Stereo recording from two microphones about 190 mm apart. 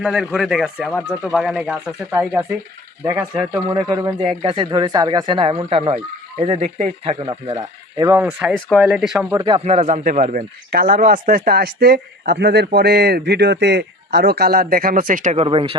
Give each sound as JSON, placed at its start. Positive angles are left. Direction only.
{"t": 0.0, "sound": "speech", "side_deg": -5}
{"t": 0.9, "sound": "speech", "side_deg": 10}
{"t": 1.4, "sound": "speech", "side_deg": -5}
{"t": 8.4, "sound": "speech", "side_deg": 0}
{"t": 9.6, "sound": "speech", "side_deg": -35}
{"t": 10.7, "sound": "speech", "side_deg": -50}